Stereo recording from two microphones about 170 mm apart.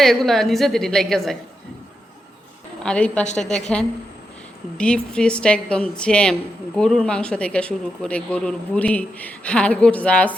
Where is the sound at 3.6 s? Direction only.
5° left (ahead or behind).